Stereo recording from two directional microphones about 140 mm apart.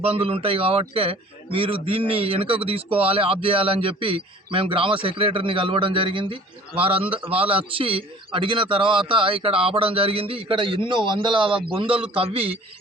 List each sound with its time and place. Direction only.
0.0 s a man's voice: 45° right (ahead or behind)